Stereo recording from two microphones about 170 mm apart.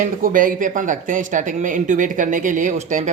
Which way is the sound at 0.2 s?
50° right (ahead or behind).